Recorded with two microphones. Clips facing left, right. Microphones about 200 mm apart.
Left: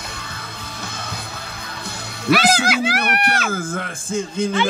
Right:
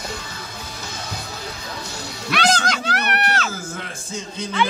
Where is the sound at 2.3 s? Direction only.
5° left (ahead or behind).